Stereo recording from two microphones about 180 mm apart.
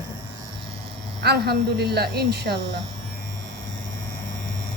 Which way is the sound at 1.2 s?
65° right (ahead or behind).